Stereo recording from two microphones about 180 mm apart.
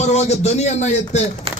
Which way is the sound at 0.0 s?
35° left (ahead or behind).